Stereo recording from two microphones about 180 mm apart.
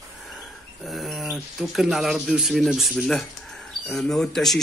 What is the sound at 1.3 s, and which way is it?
Speech, centre (ahead or behind).